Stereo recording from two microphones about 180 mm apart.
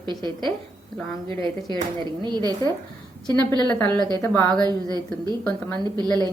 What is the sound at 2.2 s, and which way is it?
Speech, 20° right (ahead or behind).